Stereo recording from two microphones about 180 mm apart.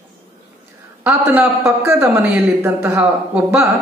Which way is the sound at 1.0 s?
10° right (ahead or behind).